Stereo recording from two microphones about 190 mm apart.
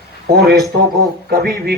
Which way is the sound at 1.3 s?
50° right (ahead or behind).